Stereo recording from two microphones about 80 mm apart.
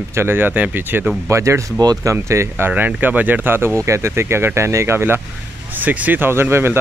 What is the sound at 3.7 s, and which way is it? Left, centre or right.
Speech, right.